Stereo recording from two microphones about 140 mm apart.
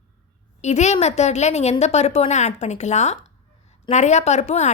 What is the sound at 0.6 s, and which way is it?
A woman's voice, 55° left (ahead or behind).